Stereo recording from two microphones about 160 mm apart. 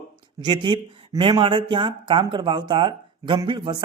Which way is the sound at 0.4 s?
30° right (ahead or behind).